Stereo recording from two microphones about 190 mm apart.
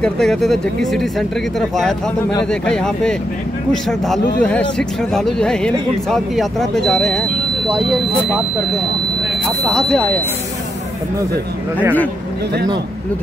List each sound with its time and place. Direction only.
0.0 s speech: centre (ahead or behind)
2.6 s speech: 5° left (ahead or behind)
9.6 s speech: centre (ahead or behind)